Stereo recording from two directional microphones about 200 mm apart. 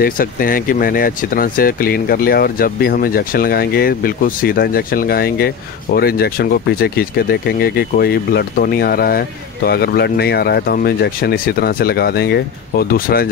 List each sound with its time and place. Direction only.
0.0 s speech: 45° left (ahead or behind)